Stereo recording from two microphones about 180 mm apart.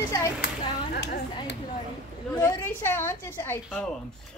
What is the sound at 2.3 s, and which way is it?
A woman's voice, 15° left (ahead or behind).